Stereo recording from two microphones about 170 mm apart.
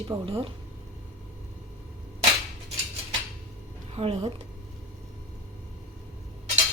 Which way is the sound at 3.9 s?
35° right (ahead or behind).